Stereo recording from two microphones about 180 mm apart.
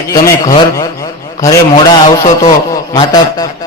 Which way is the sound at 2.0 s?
40° left (ahead or behind).